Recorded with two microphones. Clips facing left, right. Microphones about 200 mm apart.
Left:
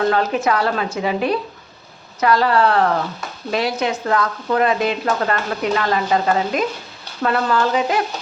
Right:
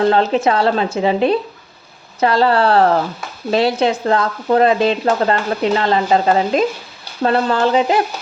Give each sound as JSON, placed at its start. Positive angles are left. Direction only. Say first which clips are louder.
{"t": 0.0, "sound": "speech", "louder": "right 4 dB", "side_deg": -25}